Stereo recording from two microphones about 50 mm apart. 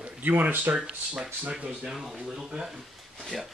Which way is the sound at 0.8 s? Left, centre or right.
Centre.